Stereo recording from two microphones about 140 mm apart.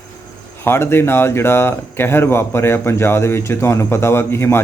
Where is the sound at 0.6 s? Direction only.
15° left (ahead or behind).